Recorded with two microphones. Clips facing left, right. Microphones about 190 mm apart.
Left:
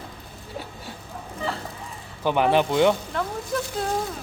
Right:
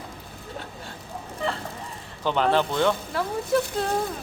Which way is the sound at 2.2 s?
15° left (ahead or behind).